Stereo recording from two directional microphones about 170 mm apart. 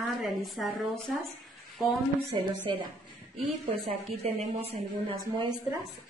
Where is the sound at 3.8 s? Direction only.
40° right (ahead or behind).